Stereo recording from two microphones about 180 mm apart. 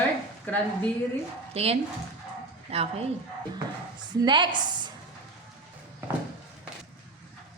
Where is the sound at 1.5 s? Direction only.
35° right (ahead or behind).